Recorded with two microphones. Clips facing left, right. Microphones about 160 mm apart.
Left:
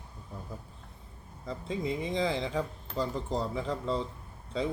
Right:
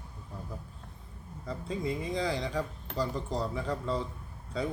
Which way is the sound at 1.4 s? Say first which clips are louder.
Left 1 dB; 25° left (ahead or behind).